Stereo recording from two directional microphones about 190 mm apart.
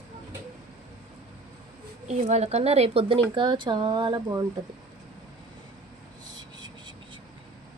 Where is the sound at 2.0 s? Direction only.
35° right (ahead or behind); by 4.4 s 20° right (ahead or behind).